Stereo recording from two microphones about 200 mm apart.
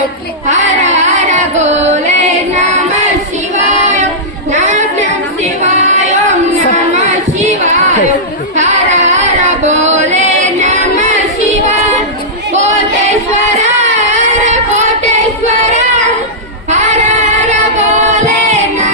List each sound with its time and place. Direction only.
0.4 s carnatic music: 35° right (ahead or behind)
3.5 s child singing: 35° right (ahead or behind)
4.5 s singing: 35° right (ahead or behind)
6.9 s a sound: 35° right (ahead or behind)
8.5 s singing: 35° right (ahead or behind)
12.5 s music: 35° right (ahead or behind)
13.6 s a sound: 35° right (ahead or behind)
15.4 s child singing: 35° right (ahead or behind)
16.6 s female singing: 35° right (ahead or behind)